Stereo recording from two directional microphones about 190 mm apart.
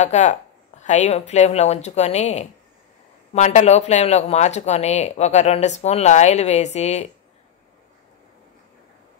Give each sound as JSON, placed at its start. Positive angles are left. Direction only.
{"t": 0.0, "sound": "speech", "side_deg": 35}